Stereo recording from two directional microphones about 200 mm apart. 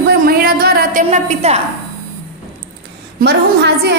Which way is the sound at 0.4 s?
50° right (ahead or behind).